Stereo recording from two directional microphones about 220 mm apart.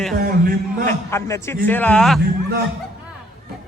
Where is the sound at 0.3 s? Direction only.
40° right (ahead or behind).